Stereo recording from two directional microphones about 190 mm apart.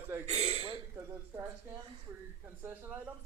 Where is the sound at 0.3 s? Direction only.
35° right (ahead or behind).